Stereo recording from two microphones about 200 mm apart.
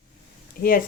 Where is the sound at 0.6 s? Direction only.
45° left (ahead or behind).